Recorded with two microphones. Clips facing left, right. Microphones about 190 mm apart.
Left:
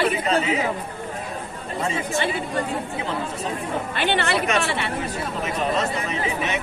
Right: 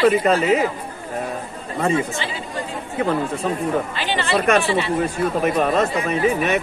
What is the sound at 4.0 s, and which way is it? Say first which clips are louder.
Speech: right 1 dB; 60° left (ahead or behind).